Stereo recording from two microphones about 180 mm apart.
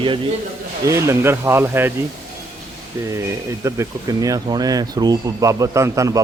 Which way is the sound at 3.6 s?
15° right (ahead or behind).